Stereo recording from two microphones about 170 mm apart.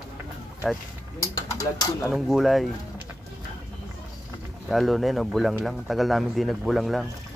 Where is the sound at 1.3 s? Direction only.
20° left (ahead or behind).